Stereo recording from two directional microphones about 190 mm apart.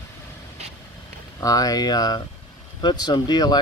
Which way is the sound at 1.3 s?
20° left (ahead or behind).